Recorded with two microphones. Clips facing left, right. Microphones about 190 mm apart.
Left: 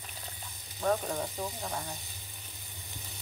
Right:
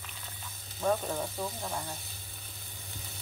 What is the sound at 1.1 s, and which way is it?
Speech, 15° left (ahead or behind).